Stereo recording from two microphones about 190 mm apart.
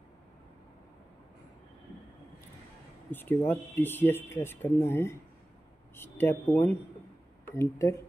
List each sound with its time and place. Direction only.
3.1 s speech: 10° left (ahead or behind)